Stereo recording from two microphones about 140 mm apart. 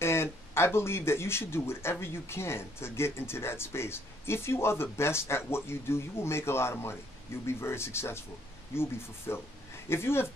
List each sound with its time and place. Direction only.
0.0 s speech: 20° left (ahead or behind)